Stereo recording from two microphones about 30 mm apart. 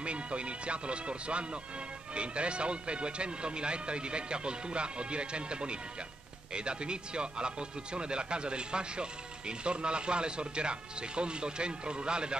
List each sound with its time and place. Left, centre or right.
0.0 s speech: right